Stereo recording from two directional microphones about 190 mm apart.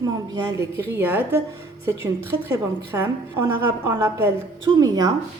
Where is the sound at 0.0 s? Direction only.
15° right (ahead or behind).